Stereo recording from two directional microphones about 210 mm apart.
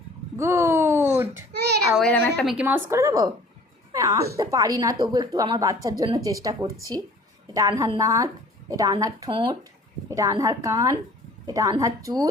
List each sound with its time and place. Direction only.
0.3 s a sound: 15° right (ahead or behind)
1.5 s child singing: 50° right (ahead or behind)
2.0 s a woman's voice: 5° left (ahead or behind)
2.5 s a woman's voice: 10° right (ahead or behind)